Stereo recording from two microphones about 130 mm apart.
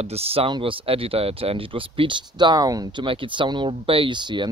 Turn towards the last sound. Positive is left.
turn(degrees=-35)  # may be behind; listen again after turning